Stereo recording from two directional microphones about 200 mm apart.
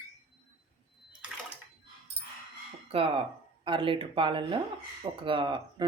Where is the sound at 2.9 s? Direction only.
30° right (ahead or behind).